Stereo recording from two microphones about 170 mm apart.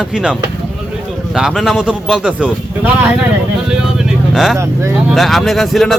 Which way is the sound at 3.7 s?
5° right (ahead or behind).